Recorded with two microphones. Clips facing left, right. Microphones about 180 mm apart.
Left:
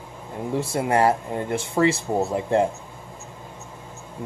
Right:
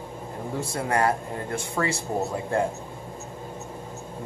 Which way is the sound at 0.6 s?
25° left (ahead or behind).